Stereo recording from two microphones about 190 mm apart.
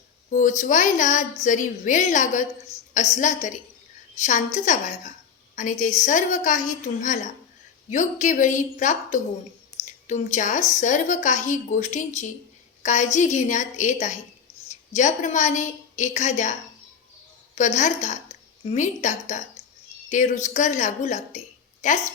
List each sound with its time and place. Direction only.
0.3 s a woman's voice: 40° left (ahead or behind)
9.8 s a sound: 40° left (ahead or behind)
10.8 s a woman's voice: 40° left (ahead or behind)